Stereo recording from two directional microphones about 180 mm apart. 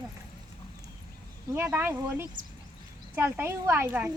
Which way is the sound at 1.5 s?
10° right (ahead or behind).